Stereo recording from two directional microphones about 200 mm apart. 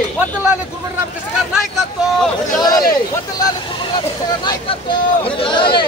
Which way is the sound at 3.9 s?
20° left (ahead or behind).